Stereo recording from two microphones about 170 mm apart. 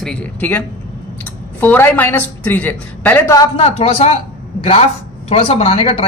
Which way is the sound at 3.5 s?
35° left (ahead or behind).